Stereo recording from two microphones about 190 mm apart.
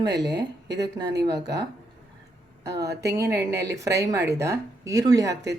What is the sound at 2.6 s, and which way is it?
A woman's voice, 15° right (ahead or behind).